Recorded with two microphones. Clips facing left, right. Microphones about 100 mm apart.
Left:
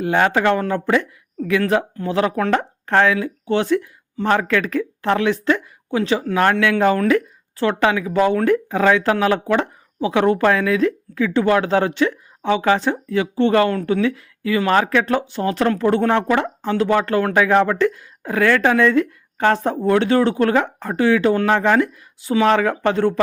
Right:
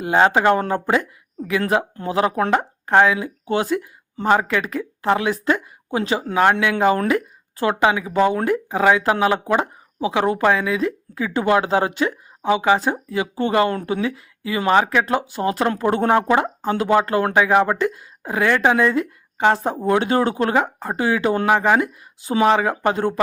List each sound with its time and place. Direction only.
0.0 s speech: 20° right (ahead or behind); by 11.2 s 5° right (ahead or behind)
11.2 s a woman's voice: 15° right (ahead or behind)
19.5 s speech: 5° right (ahead or behind)
19.8 s speech: 20° right (ahead or behind)